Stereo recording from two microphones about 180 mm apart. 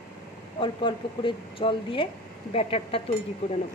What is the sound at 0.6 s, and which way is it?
Speech, 30° left (ahead or behind).